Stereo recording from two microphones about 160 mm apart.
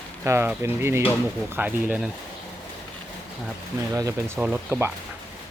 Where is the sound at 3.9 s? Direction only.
20° right (ahead or behind).